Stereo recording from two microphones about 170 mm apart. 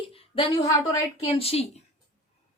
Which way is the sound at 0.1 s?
35° left (ahead or behind).